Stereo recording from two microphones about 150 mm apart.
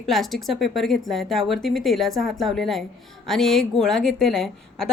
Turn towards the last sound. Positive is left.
turn(degrees=5)  # may be behind; listen again after turning